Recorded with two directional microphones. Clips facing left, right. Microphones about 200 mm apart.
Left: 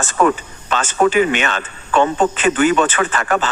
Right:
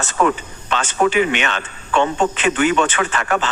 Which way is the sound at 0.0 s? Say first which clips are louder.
Left 2 dB; 45° left (ahead or behind).